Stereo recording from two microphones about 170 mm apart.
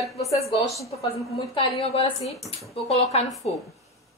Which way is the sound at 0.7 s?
20° left (ahead or behind).